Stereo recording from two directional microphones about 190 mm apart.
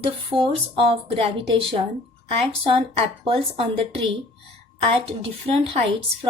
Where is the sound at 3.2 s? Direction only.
30° right (ahead or behind).